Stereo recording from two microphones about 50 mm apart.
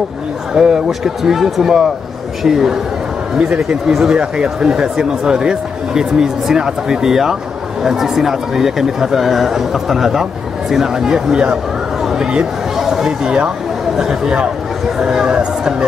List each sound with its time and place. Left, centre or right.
0.6 s speech: centre
11.4 s a sound: centre
13.9 s speech: centre